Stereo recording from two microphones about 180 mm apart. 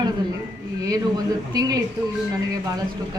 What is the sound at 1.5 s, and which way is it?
Speech, 20° right (ahead or behind).